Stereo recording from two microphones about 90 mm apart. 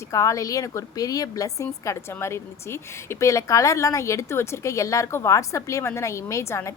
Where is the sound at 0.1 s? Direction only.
35° left (ahead or behind).